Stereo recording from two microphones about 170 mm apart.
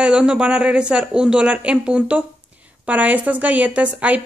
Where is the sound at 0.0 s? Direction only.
5° right (ahead or behind).